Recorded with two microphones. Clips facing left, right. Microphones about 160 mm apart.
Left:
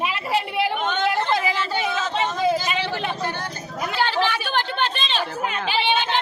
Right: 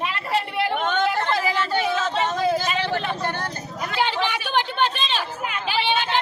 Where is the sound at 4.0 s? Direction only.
15° right (ahead or behind).